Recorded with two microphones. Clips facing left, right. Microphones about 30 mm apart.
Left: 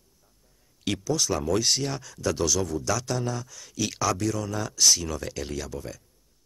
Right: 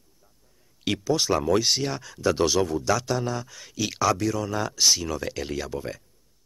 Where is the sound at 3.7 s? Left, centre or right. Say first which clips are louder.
Right 3 dB; centre.